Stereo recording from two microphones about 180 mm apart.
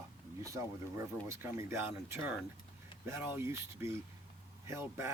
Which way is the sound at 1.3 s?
15° right (ahead or behind).